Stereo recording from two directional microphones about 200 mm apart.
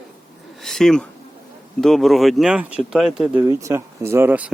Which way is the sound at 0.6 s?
Centre (ahead or behind).